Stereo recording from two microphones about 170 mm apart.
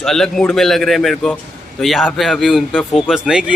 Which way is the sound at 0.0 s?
5° left (ahead or behind).